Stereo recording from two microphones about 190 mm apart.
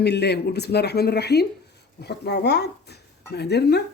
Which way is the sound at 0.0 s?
60° left (ahead or behind).